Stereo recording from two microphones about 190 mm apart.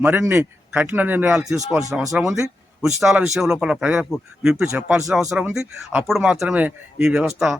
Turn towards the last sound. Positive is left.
turn(degrees=0)  # may be behind; listen again after turning